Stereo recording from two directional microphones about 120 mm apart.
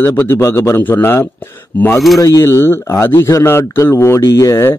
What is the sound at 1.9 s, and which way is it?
Speech, centre (ahead or behind).